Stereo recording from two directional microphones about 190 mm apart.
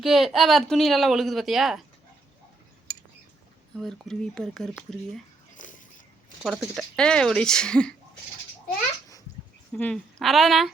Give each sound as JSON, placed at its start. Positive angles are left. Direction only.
{"t": 0.0, "sound": "a woman's voice", "side_deg": 0}
{"t": 3.8, "sound": "a woman's voice", "side_deg": 0}
{"t": 5.5, "sound": "a sound", "side_deg": 45}
{"t": 6.4, "sound": "a woman's voice", "side_deg": 0}
{"t": 9.7, "sound": "a woman's voice", "side_deg": 5}